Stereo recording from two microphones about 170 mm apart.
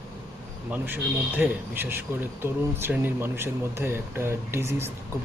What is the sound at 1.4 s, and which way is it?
Speech, 10° right (ahead or behind).